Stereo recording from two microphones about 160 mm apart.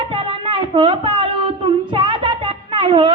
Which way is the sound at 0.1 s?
35° right (ahead or behind).